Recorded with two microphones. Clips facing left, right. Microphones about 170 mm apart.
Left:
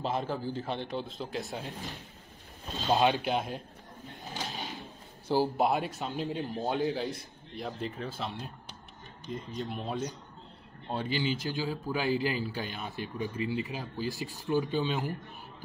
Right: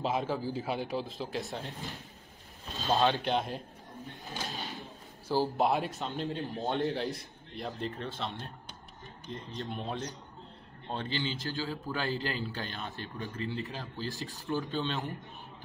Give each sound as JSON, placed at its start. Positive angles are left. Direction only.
{"t": 0.0, "sound": "a man's voice", "side_deg": 0}
{"t": 2.9, "sound": "speech", "side_deg": 15}
{"t": 3.2, "sound": "a man's voice", "side_deg": 5}
{"t": 5.6, "sound": "a man's voice", "side_deg": 0}